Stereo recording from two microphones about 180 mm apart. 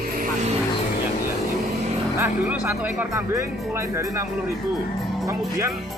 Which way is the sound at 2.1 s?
10° right (ahead or behind).